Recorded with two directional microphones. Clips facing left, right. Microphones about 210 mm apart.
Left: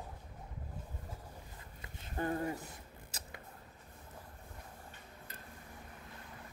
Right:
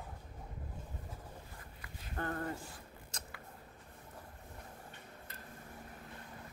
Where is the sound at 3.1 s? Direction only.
5° left (ahead or behind).